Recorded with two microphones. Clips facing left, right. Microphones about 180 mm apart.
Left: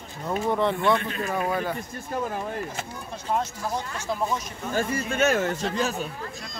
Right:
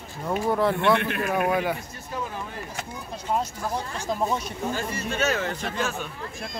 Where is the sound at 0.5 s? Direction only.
5° right (ahead or behind).